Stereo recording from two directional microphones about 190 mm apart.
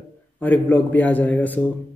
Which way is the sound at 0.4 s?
10° left (ahead or behind).